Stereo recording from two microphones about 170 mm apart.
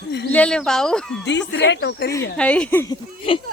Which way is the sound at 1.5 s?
90° left.